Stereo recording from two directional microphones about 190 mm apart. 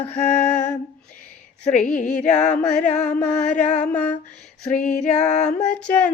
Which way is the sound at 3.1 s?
10° left (ahead or behind).